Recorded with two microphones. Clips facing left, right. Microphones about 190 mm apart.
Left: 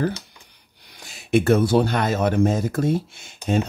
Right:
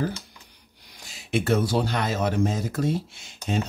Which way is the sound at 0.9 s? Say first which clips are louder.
Left 7 dB; 55° left (ahead or behind).